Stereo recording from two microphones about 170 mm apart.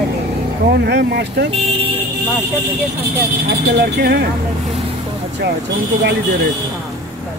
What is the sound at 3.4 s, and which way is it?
Speech, 70° right (ahead or behind).